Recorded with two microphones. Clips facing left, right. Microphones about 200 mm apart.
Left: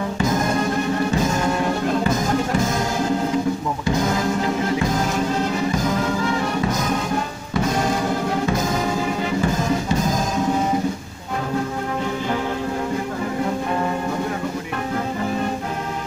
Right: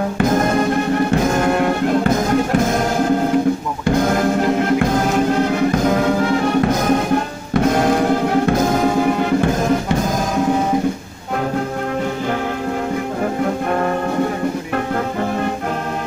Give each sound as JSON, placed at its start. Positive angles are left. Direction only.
{"t": 0.2, "sound": "music", "side_deg": -55}
{"t": 3.8, "sound": "music", "side_deg": -55}